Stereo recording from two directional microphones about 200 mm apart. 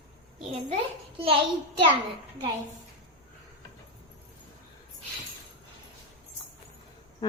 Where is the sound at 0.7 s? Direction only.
30° right (ahead or behind).